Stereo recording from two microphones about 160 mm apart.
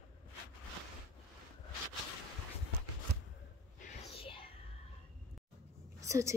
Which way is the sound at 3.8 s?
40° left (ahead or behind).